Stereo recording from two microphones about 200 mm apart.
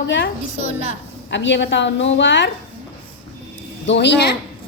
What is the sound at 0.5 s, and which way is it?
Speech, 30° right (ahead or behind).